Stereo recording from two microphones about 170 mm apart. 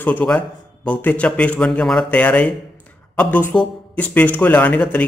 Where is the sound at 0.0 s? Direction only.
5° left (ahead or behind).